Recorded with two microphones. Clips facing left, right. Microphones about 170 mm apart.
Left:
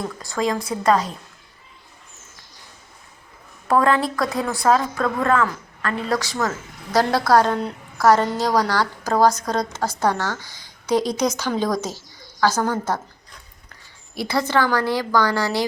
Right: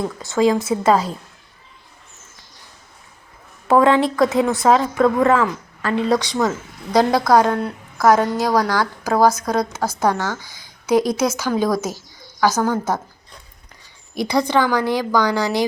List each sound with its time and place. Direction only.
0.3 s a woman's voice: 25° right (ahead or behind)
3.7 s a woman's voice: 25° right (ahead or behind)
14.2 s a woman's voice: 15° right (ahead or behind)